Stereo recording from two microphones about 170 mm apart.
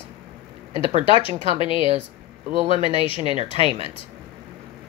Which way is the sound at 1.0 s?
30° left (ahead or behind).